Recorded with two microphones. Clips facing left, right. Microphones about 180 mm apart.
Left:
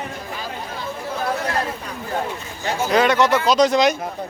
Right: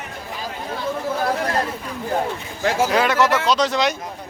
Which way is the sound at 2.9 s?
5° right (ahead or behind).